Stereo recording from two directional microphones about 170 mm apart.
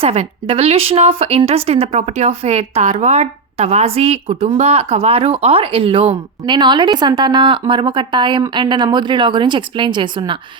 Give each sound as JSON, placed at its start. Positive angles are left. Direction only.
{"t": 0.0, "sound": "speech", "side_deg": -35}